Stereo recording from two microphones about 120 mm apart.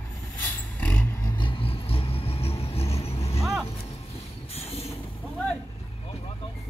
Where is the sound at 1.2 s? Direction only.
40° left (ahead or behind); by 3.4 s 60° left (ahead or behind).